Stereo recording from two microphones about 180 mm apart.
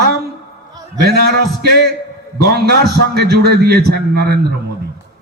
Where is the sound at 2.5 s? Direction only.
65° right (ahead or behind).